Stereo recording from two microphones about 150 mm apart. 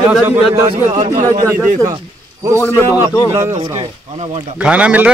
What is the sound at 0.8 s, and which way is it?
Speech, 50° right (ahead or behind).